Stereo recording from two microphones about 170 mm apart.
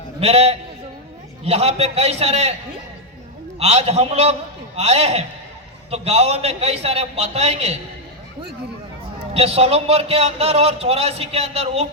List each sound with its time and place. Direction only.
0.2 s a man's voice: 35° right (ahead or behind)
3.6 s a man's voice: 40° right (ahead or behind)
9.1 s a man's voice: 35° right (ahead or behind)